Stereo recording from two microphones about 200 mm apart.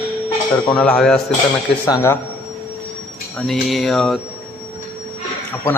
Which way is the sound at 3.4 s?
Centre (ahead or behind).